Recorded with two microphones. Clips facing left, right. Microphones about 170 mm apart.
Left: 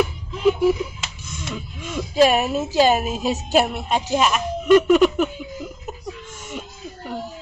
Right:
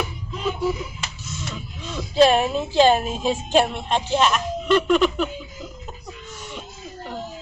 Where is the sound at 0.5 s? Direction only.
15° left (ahead or behind).